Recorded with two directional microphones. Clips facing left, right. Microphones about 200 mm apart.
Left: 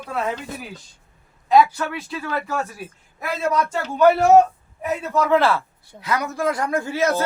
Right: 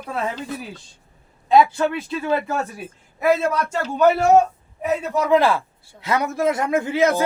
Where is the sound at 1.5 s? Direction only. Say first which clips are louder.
Right 1 dB; 25° right (ahead or behind).